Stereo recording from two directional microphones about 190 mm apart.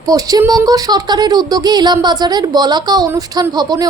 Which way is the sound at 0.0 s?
20° right (ahead or behind).